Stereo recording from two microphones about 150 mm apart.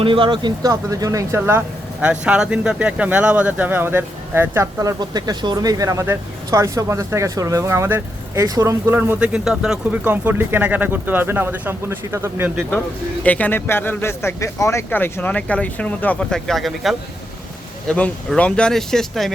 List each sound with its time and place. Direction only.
0.0 s speech: 35° right (ahead or behind); by 12.5 s 20° right (ahead or behind)
13.2 s speech: 10° left (ahead or behind)